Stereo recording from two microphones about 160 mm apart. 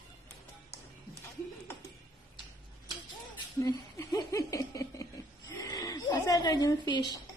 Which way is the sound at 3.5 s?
20° left (ahead or behind).